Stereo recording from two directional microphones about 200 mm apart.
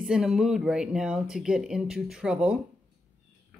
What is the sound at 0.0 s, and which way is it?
Speech, 5° right (ahead or behind).